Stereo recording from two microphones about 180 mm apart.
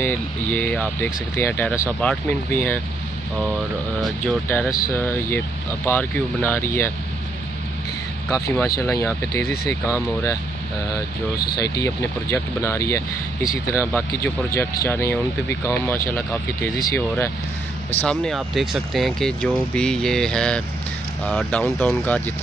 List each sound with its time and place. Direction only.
0.0 s speech: 10° left (ahead or behind)
4.2 s speech: 10° left (ahead or behind)
8.3 s speech: 20° left (ahead or behind)
11.3 s speech: 60° left (ahead or behind)
11.8 s speech: 15° left (ahead or behind)
18.0 s speech: centre (ahead or behind)